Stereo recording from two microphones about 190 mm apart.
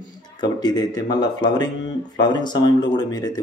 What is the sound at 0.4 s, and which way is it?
Speech, 20° left (ahead or behind).